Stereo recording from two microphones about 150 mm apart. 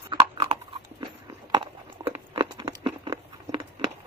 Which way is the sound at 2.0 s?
30° right (ahead or behind).